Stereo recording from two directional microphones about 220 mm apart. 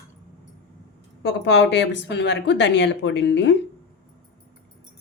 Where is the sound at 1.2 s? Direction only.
50° left (ahead or behind).